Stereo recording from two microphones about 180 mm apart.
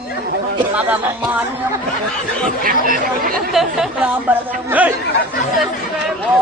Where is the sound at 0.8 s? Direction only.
10° right (ahead or behind).